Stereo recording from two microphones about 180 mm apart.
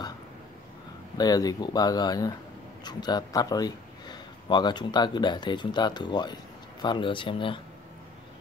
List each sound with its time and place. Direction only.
1.1 s a man's voice: 20° left (ahead or behind)